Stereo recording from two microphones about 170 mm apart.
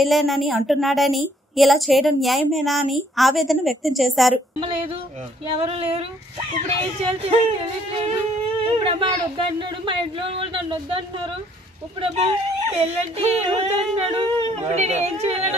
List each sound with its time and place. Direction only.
0.0 s a woman's voice: centre (ahead or behind)
5.5 s speech: 35° right (ahead or behind)
8.6 s a sound: 30° right (ahead or behind)
9.6 s speech: 30° right (ahead or behind)